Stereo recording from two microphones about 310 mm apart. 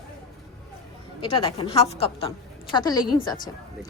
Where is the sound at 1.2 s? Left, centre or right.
Centre.